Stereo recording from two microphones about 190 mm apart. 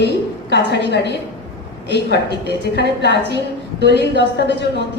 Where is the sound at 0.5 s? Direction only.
65° left (ahead or behind).